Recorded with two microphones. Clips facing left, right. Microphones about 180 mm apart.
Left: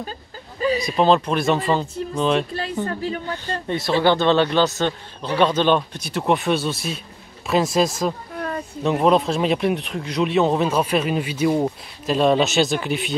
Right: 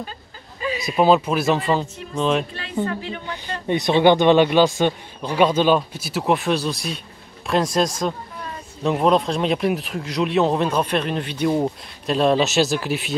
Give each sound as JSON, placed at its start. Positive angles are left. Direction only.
{"t": 0.7, "sound": "speech", "side_deg": -5}
{"t": 2.5, "sound": "a woman's voice", "side_deg": 40}
{"t": 3.4, "sound": "speech", "side_deg": -15}
{"t": 8.4, "sound": "a sound", "side_deg": 55}
{"t": 8.8, "sound": "speech", "side_deg": 0}